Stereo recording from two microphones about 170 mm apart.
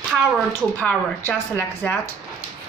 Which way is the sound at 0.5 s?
10° left (ahead or behind).